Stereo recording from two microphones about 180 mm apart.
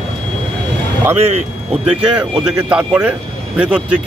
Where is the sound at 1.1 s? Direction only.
35° right (ahead or behind).